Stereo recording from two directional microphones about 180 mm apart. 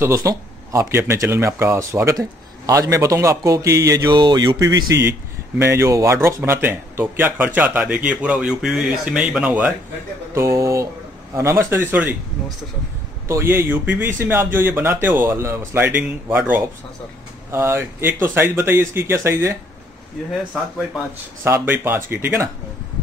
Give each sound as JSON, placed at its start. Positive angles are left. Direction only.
{"t": 0.0, "sound": "speech", "side_deg": -15}
{"t": 13.3, "sound": "speech", "side_deg": -15}
{"t": 21.5, "sound": "speech", "side_deg": -10}